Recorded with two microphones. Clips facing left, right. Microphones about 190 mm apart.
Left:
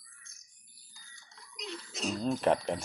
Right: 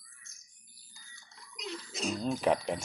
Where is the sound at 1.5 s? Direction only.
Centre (ahead or behind).